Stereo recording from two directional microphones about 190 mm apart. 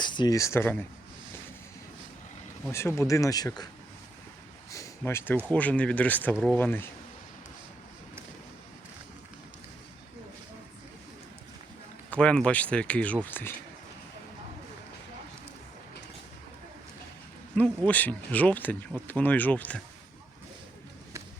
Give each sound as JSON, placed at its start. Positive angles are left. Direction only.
{"t": 0.0, "sound": "speech", "side_deg": 25}
{"t": 2.7, "sound": "speech", "side_deg": 15}
{"t": 4.7, "sound": "a sound", "side_deg": 15}
{"t": 5.5, "sound": "speech", "side_deg": 10}
{"t": 12.1, "sound": "speech", "side_deg": 5}
{"t": 17.5, "sound": "speech", "side_deg": 10}